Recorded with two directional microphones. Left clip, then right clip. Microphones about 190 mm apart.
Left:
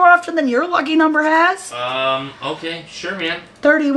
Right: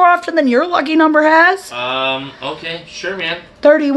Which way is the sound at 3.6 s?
20° right (ahead or behind).